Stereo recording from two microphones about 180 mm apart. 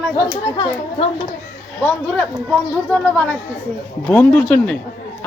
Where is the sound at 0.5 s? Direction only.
30° left (ahead or behind).